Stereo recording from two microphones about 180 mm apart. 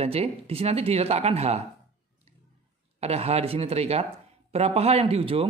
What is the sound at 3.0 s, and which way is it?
Speech, 35° right (ahead or behind).